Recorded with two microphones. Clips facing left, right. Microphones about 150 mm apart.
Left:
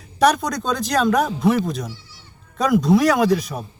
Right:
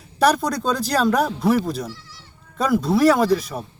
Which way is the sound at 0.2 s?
5° right (ahead or behind).